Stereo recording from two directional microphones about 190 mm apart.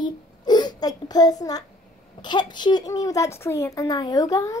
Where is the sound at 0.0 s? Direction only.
20° left (ahead or behind).